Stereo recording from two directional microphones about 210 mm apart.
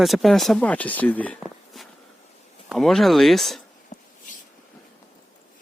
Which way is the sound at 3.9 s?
35° left (ahead or behind).